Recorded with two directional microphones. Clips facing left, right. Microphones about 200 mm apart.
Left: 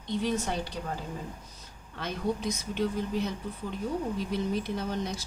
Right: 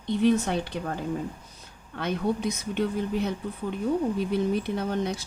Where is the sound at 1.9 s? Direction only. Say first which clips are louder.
Right 4 dB; 60° right (ahead or behind).